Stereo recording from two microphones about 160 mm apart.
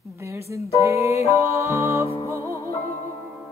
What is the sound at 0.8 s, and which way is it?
Music, 20° right (ahead or behind).